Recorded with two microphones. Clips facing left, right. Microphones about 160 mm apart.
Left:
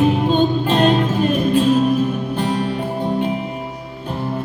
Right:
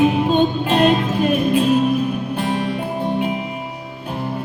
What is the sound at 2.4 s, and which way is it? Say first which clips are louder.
Music: left 2 dB; 35° left (ahead or behind).